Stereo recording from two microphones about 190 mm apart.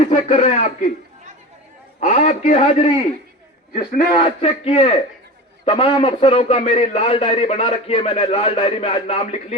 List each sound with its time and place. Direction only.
0.1 s a man's voice: 35° left (ahead or behind)
2.0 s a man's voice: 40° left (ahead or behind)
3.7 s a man's voice: 50° left (ahead or behind)
4.2 s a man's voice: 35° left (ahead or behind)